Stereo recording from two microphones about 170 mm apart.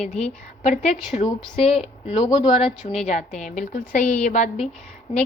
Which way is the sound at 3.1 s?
45° left (ahead or behind).